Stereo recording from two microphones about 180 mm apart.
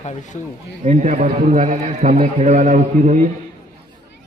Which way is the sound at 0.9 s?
45° right (ahead or behind).